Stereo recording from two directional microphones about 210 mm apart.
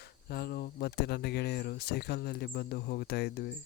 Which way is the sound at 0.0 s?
50° left (ahead or behind).